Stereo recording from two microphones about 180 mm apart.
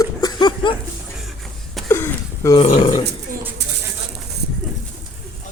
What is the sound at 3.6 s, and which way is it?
Bird, 70° right (ahead or behind).